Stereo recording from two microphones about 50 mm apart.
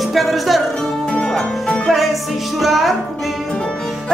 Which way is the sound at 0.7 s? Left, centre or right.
Centre.